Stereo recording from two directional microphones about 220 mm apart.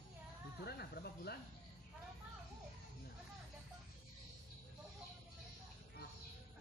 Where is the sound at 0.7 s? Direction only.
45° left (ahead or behind).